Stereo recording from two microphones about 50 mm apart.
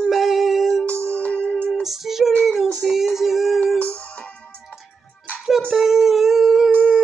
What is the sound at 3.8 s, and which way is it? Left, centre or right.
Music, left.